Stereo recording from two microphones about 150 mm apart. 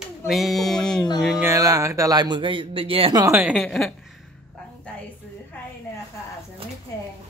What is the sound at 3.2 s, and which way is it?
Speech, 15° right (ahead or behind).